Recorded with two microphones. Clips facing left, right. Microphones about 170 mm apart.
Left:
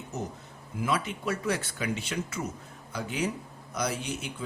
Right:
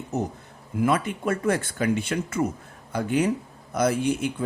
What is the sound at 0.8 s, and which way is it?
Speech, 55° right (ahead or behind).